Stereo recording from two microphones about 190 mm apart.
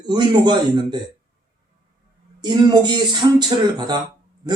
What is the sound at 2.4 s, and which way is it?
Speech, 20° right (ahead or behind).